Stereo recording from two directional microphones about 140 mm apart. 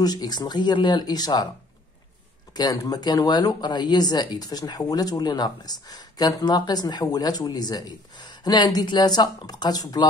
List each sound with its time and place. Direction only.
0.0 s speech: 30° left (ahead or behind)
2.5 s speech: 30° left (ahead or behind)